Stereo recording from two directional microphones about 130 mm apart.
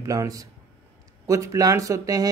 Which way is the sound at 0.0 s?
25° right (ahead or behind).